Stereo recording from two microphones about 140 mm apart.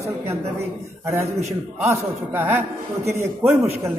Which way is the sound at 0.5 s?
20° right (ahead or behind).